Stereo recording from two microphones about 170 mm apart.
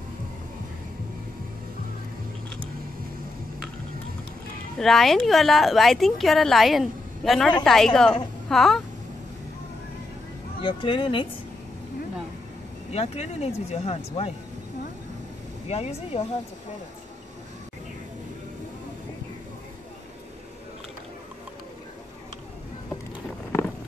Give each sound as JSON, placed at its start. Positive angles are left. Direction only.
{"t": 4.7, "sound": "speech", "side_deg": 0}
{"t": 10.6, "sound": "speech", "side_deg": 30}
{"t": 12.9, "sound": "speech", "side_deg": 35}
{"t": 15.7, "sound": "speech", "side_deg": 35}